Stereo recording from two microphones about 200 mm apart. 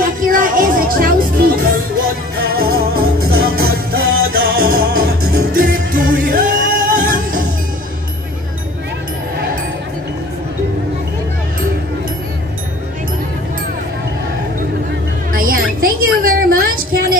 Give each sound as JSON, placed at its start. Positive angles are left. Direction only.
{"t": 0.2, "sound": "music", "side_deg": -45}
{"t": 15.3, "sound": "music", "side_deg": -45}